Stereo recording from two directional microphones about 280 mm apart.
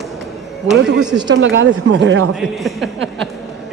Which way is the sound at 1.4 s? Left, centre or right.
Right.